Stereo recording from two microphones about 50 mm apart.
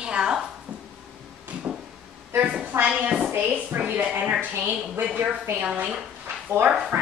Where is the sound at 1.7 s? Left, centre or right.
Right.